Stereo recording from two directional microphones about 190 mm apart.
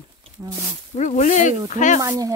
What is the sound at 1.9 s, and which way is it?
Speech, 20° right (ahead or behind).